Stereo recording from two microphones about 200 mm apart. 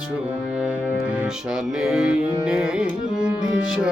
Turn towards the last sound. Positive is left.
turn(degrees=-5)  # may be behind; listen again after turning